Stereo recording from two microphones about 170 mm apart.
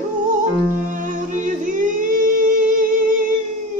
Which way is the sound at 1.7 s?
50° right (ahead or behind).